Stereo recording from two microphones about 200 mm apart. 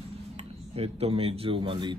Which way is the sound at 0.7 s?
30° right (ahead or behind).